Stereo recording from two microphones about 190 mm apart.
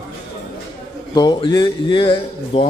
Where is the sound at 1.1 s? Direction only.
25° left (ahead or behind).